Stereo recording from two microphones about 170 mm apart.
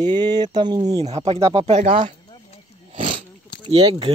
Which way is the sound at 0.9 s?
40° right (ahead or behind).